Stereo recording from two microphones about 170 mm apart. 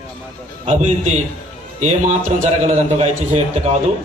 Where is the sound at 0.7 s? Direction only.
40° right (ahead or behind).